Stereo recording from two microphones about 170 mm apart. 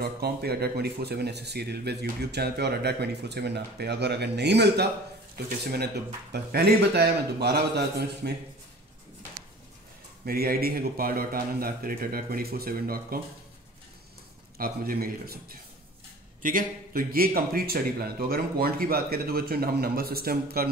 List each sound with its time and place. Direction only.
0.0 s speech: 65° right (ahead or behind); by 4.8 s 80° right
6.3 s speech: 70° right (ahead or behind)
10.2 s speech: 65° right (ahead or behind)
14.6 s speech: 60° right (ahead or behind)